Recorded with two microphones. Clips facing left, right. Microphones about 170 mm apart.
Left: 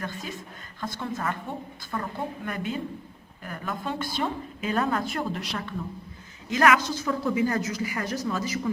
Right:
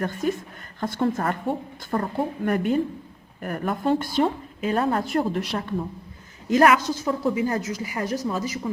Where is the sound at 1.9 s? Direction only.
40° right (ahead or behind).